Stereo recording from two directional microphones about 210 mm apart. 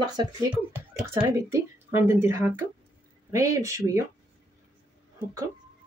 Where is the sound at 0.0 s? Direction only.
20° right (ahead or behind).